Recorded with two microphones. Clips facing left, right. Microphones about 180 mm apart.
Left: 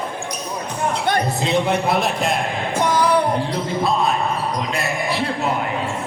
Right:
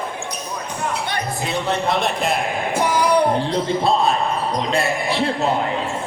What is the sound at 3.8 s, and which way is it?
Basketball bounce, 30° right (ahead or behind).